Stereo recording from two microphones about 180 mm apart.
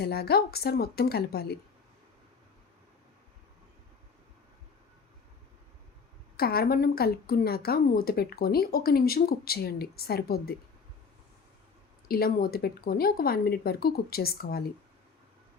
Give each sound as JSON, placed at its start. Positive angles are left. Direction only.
{"t": 0.0, "sound": "a woman's voice", "side_deg": 60}
{"t": 6.3, "sound": "a woman's voice", "side_deg": 60}
{"t": 12.0, "sound": "a woman's voice", "side_deg": 55}